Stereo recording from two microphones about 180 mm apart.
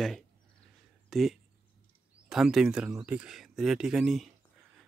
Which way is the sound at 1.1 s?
Centre (ahead or behind).